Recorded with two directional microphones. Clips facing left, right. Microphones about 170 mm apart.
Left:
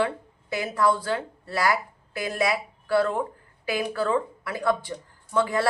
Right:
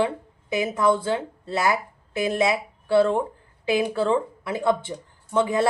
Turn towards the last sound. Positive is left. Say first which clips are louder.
# right 3 dB
turn(degrees=-20)  # may be behind; listen again after turning